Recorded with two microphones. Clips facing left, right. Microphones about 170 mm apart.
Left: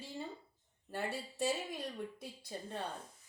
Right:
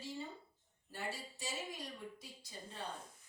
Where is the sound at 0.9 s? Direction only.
55° left (ahead or behind).